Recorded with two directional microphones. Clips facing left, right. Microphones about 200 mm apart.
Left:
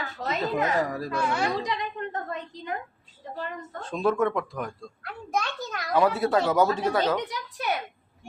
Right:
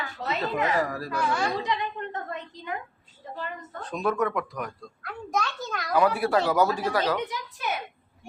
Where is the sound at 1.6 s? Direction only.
35° left (ahead or behind).